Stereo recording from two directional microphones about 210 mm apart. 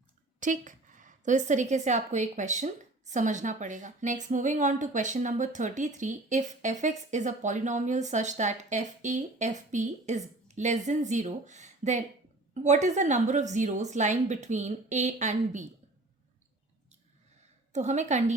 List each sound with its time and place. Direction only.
0.3 s a woman's voice: 35° right (ahead or behind)
17.7 s a woman's voice: 35° right (ahead or behind)